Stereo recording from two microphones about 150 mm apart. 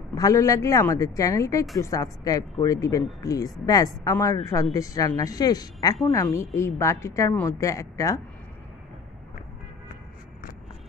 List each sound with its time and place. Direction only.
0.1 s speech: 20° left (ahead or behind)